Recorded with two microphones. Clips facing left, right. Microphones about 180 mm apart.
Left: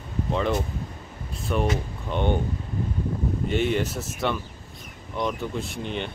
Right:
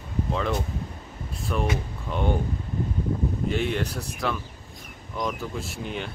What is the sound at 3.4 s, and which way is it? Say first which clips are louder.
Speech: left 3 dB; centre (ahead or behind).